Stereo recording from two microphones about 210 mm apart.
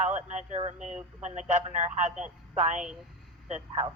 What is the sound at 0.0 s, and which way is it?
Speech, 35° right (ahead or behind).